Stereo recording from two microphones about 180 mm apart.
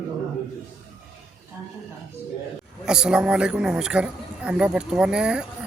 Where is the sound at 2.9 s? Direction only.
5° right (ahead or behind).